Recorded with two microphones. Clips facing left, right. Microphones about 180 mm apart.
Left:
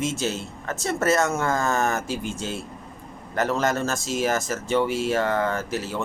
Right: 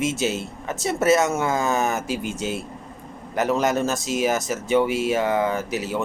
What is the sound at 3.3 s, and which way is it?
Speech, 15° right (ahead or behind).